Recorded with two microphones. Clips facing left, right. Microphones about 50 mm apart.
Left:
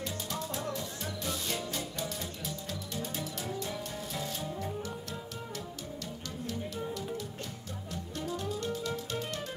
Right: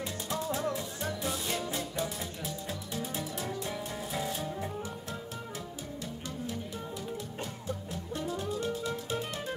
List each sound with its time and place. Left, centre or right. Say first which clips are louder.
0.0 s music: right 2 dB; centre
8.2 s music: right 1 dB; centre